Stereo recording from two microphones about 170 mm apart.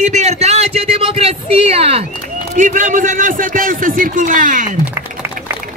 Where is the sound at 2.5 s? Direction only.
50° right (ahead or behind).